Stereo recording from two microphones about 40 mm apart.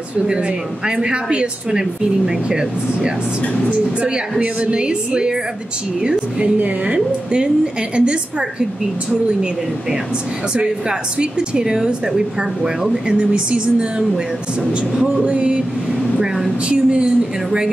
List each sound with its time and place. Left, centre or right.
0.8 s speech: right
4.0 s speech: right
10.5 s speech: right
15.2 s speech: right
16.6 s a woman's voice: right